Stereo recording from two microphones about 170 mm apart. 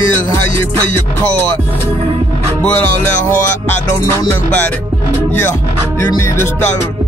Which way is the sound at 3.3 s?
15° left (ahead or behind).